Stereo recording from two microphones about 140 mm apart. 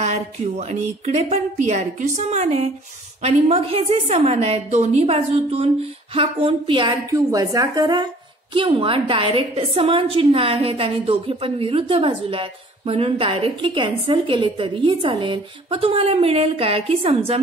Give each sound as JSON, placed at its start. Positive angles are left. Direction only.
{"t": 0.0, "sound": "a woman's voice", "side_deg": -50}
{"t": 7.1, "sound": "a woman's voice", "side_deg": -25}